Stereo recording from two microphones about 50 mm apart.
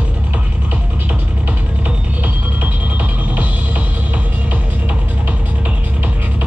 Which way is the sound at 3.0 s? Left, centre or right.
Right.